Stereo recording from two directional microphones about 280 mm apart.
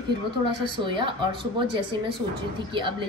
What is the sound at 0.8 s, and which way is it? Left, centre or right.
Speech, centre.